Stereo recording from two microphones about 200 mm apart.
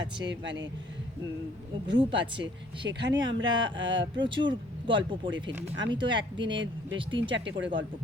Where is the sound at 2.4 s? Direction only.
65° right (ahead or behind).